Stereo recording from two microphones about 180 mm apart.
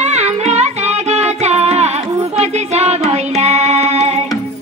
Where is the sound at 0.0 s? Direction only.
35° right (ahead or behind).